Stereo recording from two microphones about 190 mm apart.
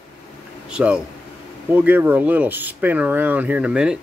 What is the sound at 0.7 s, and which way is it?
Speech, 5° right (ahead or behind).